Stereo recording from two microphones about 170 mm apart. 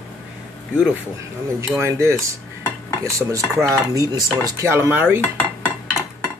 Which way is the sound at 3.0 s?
15° right (ahead or behind).